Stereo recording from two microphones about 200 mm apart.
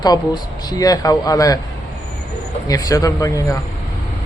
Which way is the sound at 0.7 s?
20° left (ahead or behind).